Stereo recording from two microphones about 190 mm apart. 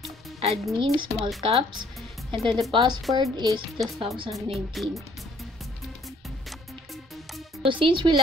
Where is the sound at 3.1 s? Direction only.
20° right (ahead or behind).